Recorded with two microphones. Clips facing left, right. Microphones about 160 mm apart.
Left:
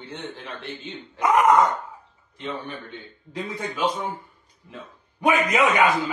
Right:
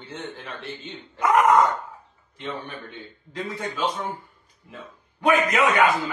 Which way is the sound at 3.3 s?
15° left (ahead or behind).